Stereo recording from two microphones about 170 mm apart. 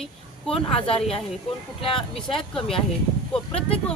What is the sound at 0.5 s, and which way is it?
Speech, 35° left (ahead or behind).